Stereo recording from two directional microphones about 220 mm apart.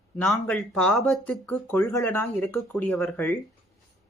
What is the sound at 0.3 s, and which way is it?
Speech, centre (ahead or behind).